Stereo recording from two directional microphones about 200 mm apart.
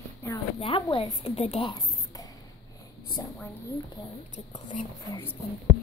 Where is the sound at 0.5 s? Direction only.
25° left (ahead or behind).